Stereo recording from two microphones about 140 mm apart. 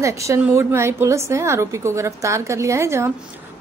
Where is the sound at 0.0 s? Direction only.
20° right (ahead or behind).